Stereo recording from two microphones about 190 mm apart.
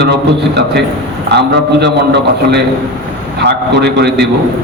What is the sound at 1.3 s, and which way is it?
Speech, 60° right (ahead or behind).